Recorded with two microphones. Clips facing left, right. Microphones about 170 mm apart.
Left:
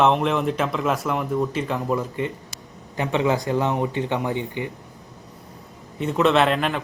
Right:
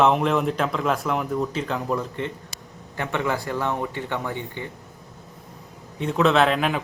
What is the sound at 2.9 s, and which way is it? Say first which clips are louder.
A man's voice: left 4 dB; 20° left (ahead or behind).